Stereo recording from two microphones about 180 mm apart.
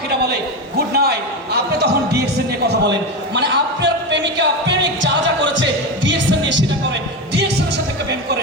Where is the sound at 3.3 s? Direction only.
70° right (ahead or behind); by 6.6 s 90° right.